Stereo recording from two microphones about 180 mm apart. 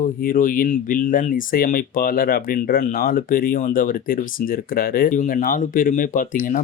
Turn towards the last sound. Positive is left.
turn(degrees=45)  # may be behind; listen again after turning